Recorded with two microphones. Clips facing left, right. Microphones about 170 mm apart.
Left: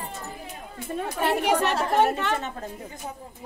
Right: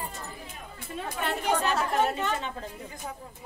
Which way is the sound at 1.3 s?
70° left (ahead or behind).